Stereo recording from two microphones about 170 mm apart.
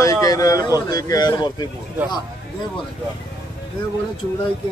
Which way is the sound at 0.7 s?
25° left (ahead or behind).